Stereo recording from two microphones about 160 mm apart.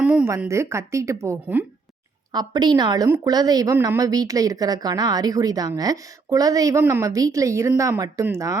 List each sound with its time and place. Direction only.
0.0 s a woman's voice: 10° right (ahead or behind)
2.3 s a woman's voice: 25° right (ahead or behind)